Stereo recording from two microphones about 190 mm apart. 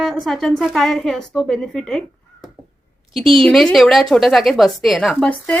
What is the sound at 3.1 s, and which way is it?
A woman's voice, centre (ahead or behind).